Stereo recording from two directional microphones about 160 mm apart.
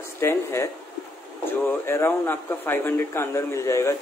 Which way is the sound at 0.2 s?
15° left (ahead or behind).